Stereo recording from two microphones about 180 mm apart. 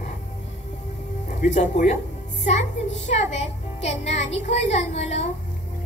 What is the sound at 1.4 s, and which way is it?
A child's voice, 40° left (ahead or behind).